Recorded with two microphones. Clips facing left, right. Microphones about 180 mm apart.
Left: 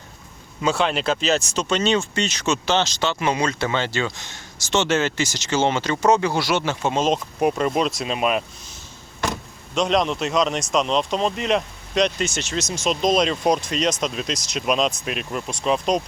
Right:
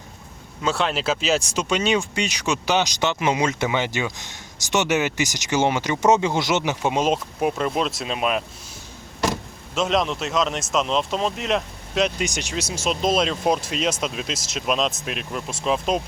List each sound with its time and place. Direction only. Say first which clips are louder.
0.6 s speech: left 2 dB; centre (ahead or behind)
7.3 s speech: left 2 dB; centre (ahead or behind)
12.2 s speech: left 1 dB; 15° right (ahead or behind)